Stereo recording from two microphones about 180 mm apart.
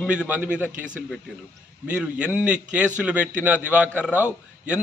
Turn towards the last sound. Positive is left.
turn(degrees=-5)  # may be behind; listen again after turning